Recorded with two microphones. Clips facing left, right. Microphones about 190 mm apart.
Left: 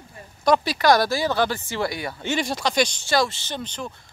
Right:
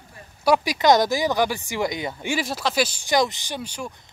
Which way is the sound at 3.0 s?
15° right (ahead or behind).